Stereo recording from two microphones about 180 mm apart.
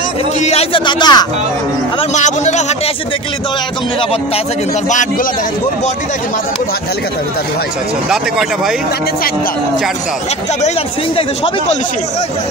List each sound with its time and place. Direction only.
0.4 s speech: 35° left (ahead or behind)
2.1 s speech: 40° left (ahead or behind)